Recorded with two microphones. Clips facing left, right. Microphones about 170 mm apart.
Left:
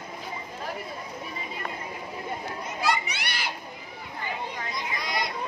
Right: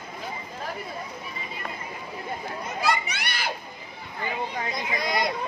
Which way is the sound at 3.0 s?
50° right (ahead or behind).